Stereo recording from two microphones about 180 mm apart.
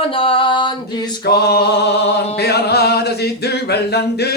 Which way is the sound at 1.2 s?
65° left (ahead or behind).